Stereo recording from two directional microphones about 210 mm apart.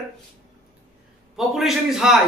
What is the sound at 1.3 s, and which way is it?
Speech, centre (ahead or behind).